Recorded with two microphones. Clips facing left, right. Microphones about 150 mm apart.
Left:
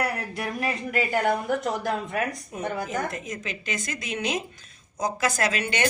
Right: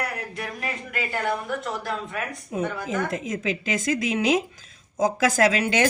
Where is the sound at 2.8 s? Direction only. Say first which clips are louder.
Right 3 dB; 90° right.